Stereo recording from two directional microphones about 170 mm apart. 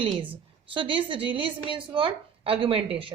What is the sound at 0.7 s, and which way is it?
Speech, 30° right (ahead or behind).